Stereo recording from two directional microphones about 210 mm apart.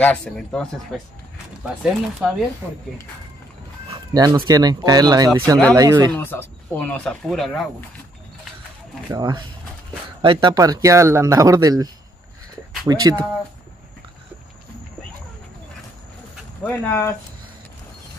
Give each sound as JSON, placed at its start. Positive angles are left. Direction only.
{"t": 0.0, "sound": "speech", "side_deg": 5}
{"t": 1.8, "sound": "speech", "side_deg": -5}
{"t": 3.9, "sound": "speech", "side_deg": -20}
{"t": 6.1, "sound": "speech", "side_deg": 10}
{"t": 9.1, "sound": "speech", "side_deg": -20}
{"t": 16.6, "sound": "speech", "side_deg": 10}